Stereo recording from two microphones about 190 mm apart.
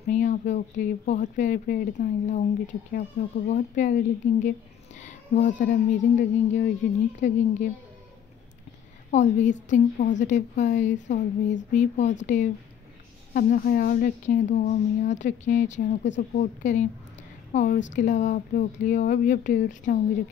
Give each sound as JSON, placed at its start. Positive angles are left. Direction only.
{"t": 0.1, "sound": "speech", "side_deg": 45}
{"t": 9.1, "sound": "a woman's voice", "side_deg": 40}